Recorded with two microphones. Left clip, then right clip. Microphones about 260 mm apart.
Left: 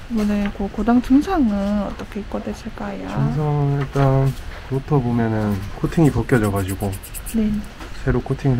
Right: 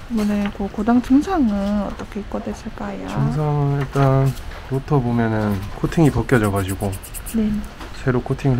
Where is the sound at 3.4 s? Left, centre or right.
Right.